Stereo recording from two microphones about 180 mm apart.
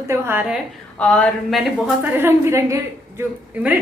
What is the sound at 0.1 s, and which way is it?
Speech, 10° right (ahead or behind).